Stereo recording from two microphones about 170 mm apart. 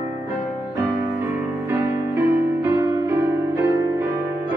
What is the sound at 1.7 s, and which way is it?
Music, 15° right (ahead or behind).